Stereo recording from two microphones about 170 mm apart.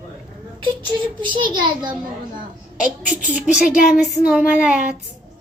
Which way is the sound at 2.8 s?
10° right (ahead or behind).